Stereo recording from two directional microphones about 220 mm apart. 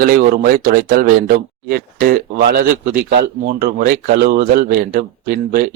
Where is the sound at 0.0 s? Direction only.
40° right (ahead or behind).